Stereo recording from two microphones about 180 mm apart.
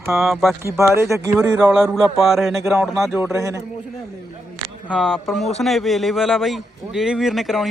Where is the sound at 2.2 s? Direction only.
Centre (ahead or behind).